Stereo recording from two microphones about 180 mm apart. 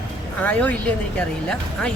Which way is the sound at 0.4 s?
10° left (ahead or behind).